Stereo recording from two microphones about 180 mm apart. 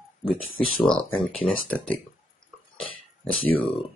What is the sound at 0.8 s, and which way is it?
Speech, 5° left (ahead or behind).